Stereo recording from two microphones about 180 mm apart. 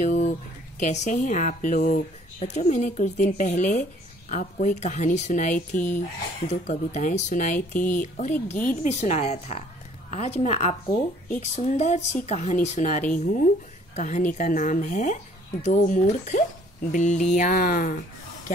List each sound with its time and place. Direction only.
0.0 s a sound: 45° left (ahead or behind)
0.7 s speech: 40° left (ahead or behind)
7.7 s speech: 10° left (ahead or behind)
8.0 s speech: 40° left (ahead or behind)